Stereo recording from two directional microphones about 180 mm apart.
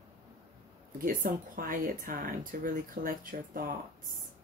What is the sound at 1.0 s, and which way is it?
Speech, 50° right (ahead or behind).